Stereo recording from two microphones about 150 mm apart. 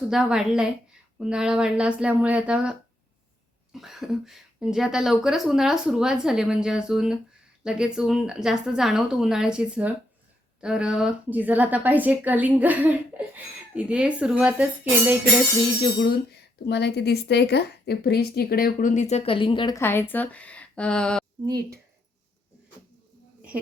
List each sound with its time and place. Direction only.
0.1 s a woman's voice: 5° right (ahead or behind)
16.6 s a woman's voice: 90° left; by 19.7 s 30° left (ahead or behind)
19.7 s speech: 15° left (ahead or behind)